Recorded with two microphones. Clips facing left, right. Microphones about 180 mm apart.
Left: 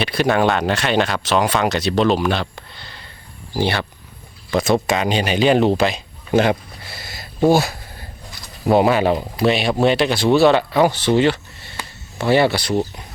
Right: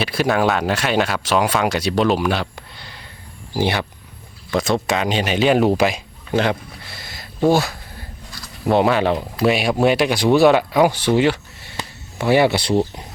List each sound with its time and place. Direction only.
0.0 s speech: 5° right (ahead or behind)
4.5 s speech: centre (ahead or behind)
6.3 s a sound: 10° left (ahead or behind)
8.6 s speech: 5° left (ahead or behind); by 12.5 s 10° right (ahead or behind)
12.5 s speech: 30° right (ahead or behind)